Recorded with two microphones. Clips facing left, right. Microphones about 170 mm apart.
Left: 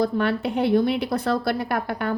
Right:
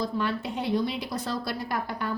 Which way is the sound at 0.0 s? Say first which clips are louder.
Left 7 dB; 60° left (ahead or behind).